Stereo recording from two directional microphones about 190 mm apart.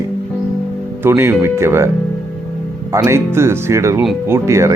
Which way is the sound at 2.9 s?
15° right (ahead or behind).